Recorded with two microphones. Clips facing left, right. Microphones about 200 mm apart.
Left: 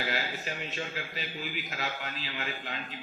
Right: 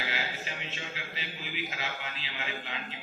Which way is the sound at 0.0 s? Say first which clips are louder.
Left 3 dB; 45° left (ahead or behind).